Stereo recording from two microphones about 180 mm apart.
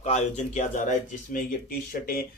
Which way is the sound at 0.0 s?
40° left (ahead or behind).